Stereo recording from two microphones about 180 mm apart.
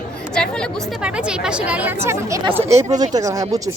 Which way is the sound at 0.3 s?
5° left (ahead or behind).